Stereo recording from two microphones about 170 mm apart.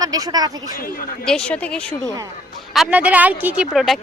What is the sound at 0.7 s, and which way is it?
Speech, 55° left (ahead or behind).